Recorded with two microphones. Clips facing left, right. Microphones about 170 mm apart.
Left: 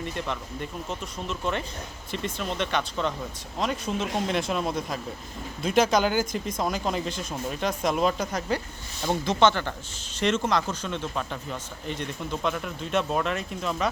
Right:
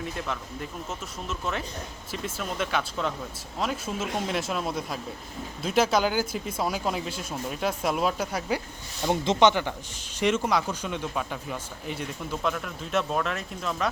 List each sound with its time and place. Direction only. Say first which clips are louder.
0.0 s speech: left 1 dB; centre (ahead or behind)
9.0 s speech: right 1 dB; 20° right (ahead or behind); by 13.9 s centre (ahead or behind)